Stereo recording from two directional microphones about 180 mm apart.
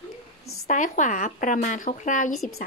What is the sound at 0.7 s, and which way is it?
A child's voice, 45° left (ahead or behind).